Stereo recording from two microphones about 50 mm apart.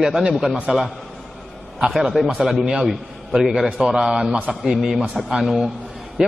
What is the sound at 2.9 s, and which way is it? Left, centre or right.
A man's voice, centre.